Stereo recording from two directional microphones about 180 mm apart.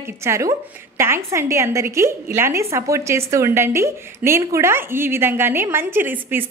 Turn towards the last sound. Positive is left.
turn(degrees=-10)  # may be behind; listen again after turning